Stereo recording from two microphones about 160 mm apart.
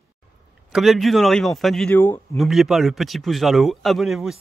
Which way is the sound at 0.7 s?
Centre (ahead or behind).